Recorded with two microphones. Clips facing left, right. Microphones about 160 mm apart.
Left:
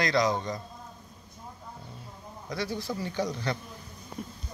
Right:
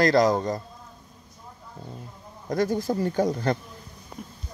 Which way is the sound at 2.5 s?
45° right (ahead or behind).